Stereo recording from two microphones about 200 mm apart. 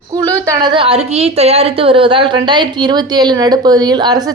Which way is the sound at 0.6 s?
25° right (ahead or behind).